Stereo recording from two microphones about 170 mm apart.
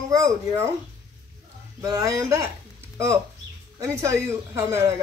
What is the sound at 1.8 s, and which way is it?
Speech, 20° right (ahead or behind).